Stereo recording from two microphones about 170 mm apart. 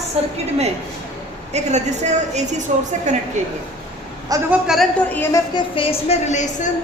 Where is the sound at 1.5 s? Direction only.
40° right (ahead or behind).